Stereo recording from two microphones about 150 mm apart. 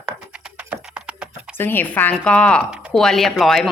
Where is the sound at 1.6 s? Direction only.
15° left (ahead or behind).